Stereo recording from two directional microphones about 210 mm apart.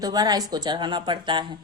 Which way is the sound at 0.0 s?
20° right (ahead or behind).